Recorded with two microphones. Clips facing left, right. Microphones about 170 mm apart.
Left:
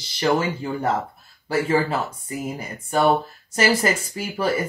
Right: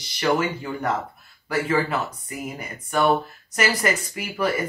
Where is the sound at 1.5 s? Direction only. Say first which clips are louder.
Left 2 dB; 30° left (ahead or behind).